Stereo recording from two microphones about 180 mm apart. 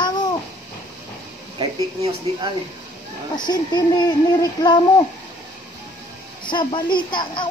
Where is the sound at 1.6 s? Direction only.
25° right (ahead or behind).